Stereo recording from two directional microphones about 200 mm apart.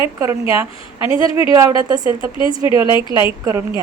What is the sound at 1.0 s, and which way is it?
A woman's voice, 25° left (ahead or behind).